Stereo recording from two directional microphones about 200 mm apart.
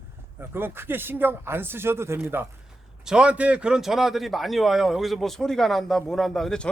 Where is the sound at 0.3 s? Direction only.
10° right (ahead or behind).